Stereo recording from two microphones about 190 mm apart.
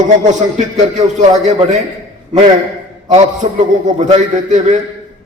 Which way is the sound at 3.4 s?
30° right (ahead or behind).